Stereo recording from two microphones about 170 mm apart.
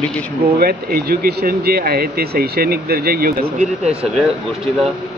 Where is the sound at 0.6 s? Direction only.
65° right (ahead or behind).